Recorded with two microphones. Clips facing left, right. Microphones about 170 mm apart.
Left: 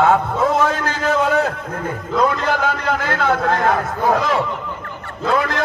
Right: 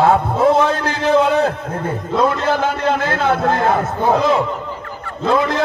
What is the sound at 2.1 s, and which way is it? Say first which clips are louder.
A man's voice: right 1 dB; 30° right (ahead or behind).